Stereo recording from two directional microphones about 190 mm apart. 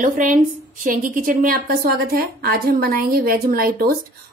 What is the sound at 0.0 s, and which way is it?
A woman's voice, 45° right (ahead or behind).